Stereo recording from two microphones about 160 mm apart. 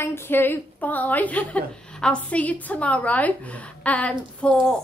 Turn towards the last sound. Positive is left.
turn(degrees=5)  # may be behind; listen again after turning